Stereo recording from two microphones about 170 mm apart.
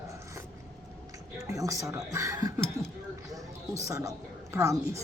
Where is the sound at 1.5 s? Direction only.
20° right (ahead or behind).